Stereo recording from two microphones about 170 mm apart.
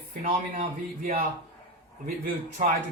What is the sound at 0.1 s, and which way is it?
Speech, 50° right (ahead or behind).